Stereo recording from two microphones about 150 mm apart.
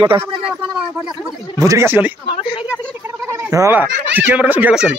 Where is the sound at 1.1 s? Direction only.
20° right (ahead or behind).